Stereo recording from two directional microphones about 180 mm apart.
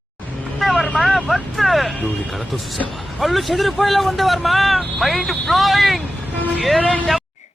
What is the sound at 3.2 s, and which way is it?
Speech, centre (ahead or behind).